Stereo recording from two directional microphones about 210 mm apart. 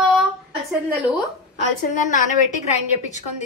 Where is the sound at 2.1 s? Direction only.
35° left (ahead or behind).